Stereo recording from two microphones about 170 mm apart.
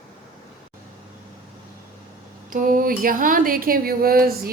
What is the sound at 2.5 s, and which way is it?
A woman's voice, 55° right (ahead or behind).